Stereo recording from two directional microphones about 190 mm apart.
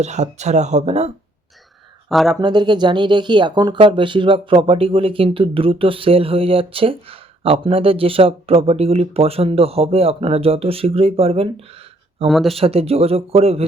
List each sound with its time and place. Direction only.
0.0 s speech: 35° right (ahead or behind)
2.0 s speech: centre (ahead or behind)
2.4 s speech: 25° right (ahead or behind)
12.3 s speech: centre (ahead or behind)
12.5 s speech: 30° right (ahead or behind)